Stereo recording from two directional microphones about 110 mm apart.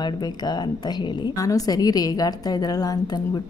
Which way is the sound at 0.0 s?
40° left (ahead or behind).